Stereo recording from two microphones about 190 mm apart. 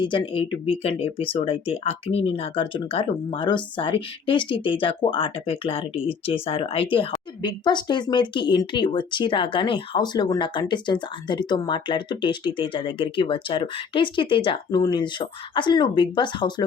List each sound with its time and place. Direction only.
0.0 s speech: 25° left (ahead or behind)